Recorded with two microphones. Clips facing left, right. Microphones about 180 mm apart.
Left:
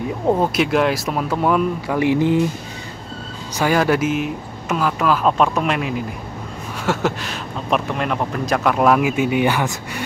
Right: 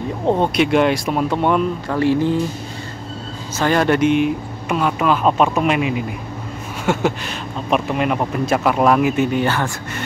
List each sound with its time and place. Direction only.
0.3 s a man's voice: centre (ahead or behind)
2.0 s speech: 15° left (ahead or behind)
3.5 s a man's voice: 5° left (ahead or behind)